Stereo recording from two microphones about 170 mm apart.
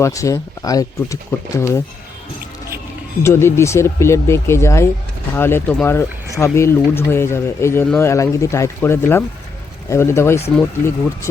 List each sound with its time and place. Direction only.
0.0 s speech: 20° left (ahead or behind)
3.2 s speech: 15° left (ahead or behind)